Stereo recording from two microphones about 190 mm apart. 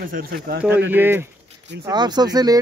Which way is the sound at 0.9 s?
10° right (ahead or behind).